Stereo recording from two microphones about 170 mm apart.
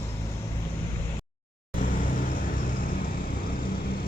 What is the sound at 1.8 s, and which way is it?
Vehicle, 50° left (ahead or behind).